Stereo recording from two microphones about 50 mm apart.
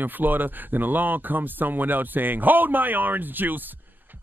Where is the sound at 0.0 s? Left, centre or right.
Right.